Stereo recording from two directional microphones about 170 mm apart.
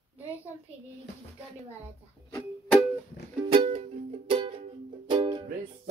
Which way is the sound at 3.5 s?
35° right (ahead or behind).